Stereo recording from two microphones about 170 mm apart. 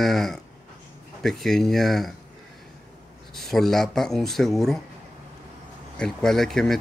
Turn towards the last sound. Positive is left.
turn(degrees=5)  # may be behind; listen again after turning